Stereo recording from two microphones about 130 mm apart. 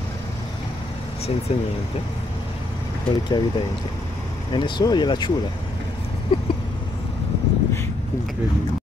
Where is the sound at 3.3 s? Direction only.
35° left (ahead or behind).